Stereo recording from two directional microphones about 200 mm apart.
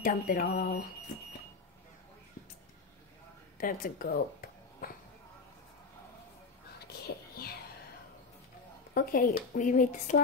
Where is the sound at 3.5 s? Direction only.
45° left (ahead or behind).